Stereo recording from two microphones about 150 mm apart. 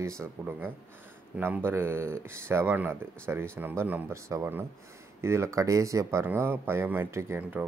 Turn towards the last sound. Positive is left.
turn(degrees=-10)  # may be behind; listen again after turning